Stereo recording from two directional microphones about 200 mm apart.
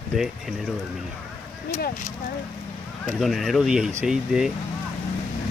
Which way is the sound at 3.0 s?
Centre (ahead or behind).